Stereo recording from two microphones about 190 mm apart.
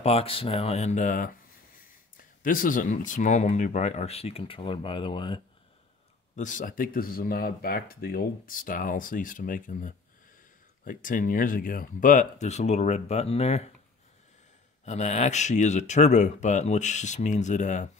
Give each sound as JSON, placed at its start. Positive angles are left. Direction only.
{"t": 0.0, "sound": "speech", "side_deg": 30}
{"t": 6.3, "sound": "speech", "side_deg": 40}
{"t": 14.9, "sound": "speech", "side_deg": 35}